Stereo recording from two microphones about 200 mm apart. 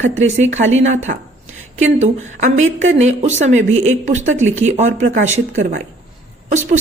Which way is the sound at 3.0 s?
35° right (ahead or behind).